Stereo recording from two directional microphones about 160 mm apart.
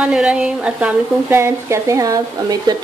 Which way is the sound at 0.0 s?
5° right (ahead or behind).